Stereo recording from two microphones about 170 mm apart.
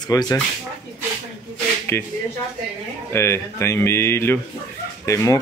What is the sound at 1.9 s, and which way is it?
Speech, 15° left (ahead or behind).